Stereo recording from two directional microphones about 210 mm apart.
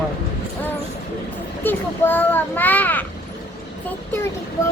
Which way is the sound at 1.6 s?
10° left (ahead or behind).